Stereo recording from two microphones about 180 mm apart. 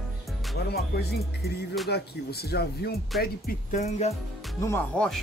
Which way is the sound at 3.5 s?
40° left (ahead or behind).